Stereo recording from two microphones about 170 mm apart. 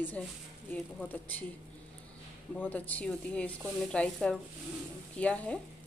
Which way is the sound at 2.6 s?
10° left (ahead or behind).